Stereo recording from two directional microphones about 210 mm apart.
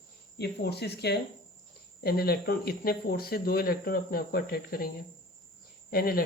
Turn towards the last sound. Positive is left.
turn(degrees=45)  # may be behind; listen again after turning